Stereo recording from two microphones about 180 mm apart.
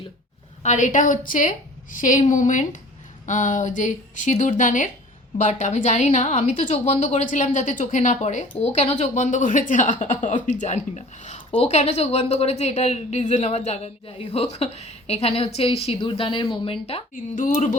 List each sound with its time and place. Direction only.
0.6 s a woman's voice: 40° left (ahead or behind)
17.4 s a woman's voice: 45° left (ahead or behind)